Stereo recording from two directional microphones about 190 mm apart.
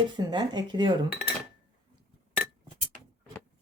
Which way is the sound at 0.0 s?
25° right (ahead or behind).